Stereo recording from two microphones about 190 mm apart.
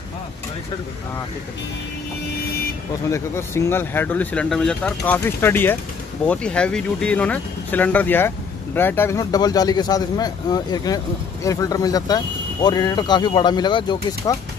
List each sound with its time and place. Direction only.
3.1 s a man's voice: 15° left (ahead or behind)